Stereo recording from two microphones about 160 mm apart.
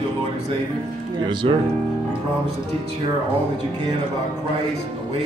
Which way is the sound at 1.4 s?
40° right (ahead or behind).